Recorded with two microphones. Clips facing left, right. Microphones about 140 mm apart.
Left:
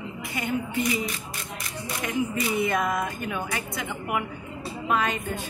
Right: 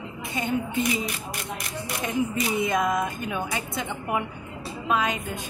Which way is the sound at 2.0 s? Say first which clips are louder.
Right 1 dB; 20° right (ahead or behind).